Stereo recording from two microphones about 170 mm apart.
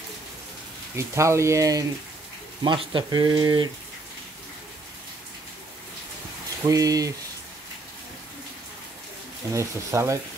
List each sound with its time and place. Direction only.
0.9 s speech: 15° right (ahead or behind)
6.7 s speech: 20° right (ahead or behind)
9.5 s speech: 15° right (ahead or behind)